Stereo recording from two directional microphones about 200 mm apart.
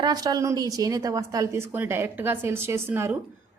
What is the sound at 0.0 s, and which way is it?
A woman's voice, 20° right (ahead or behind).